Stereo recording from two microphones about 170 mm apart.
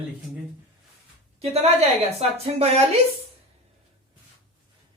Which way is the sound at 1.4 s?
40° right (ahead or behind).